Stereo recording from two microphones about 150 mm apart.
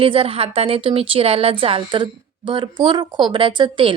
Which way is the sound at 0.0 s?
40° right (ahead or behind).